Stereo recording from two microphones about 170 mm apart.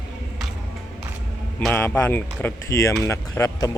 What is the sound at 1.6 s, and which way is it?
Speech, 10° left (ahead or behind).